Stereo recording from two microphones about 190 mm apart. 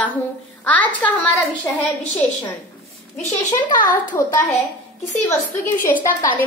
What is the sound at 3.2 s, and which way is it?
Speech, 45° left (ahead or behind).